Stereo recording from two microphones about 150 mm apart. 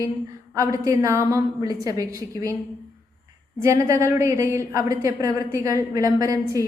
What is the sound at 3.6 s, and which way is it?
A woman's voice, 20° right (ahead or behind).